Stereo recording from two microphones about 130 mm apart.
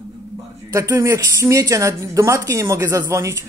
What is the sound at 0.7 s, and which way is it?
Speech, 20° right (ahead or behind).